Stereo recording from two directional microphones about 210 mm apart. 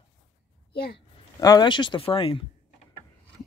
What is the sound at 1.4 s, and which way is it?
Speech, 20° left (ahead or behind).